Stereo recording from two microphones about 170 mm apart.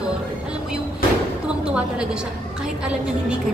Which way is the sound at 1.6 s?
5° right (ahead or behind).